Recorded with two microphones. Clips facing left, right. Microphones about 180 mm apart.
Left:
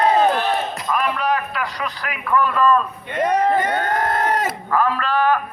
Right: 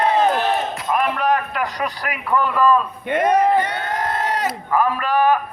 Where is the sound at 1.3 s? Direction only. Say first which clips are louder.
Right 2 dB; 15° right (ahead or behind).